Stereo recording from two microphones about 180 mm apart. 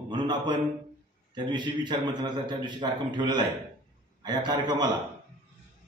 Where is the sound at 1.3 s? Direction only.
25° right (ahead or behind).